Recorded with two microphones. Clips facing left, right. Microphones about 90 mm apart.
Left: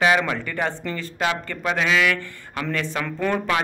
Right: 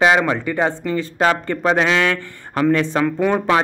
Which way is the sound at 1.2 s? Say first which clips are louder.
Right 7 dB; 40° right (ahead or behind).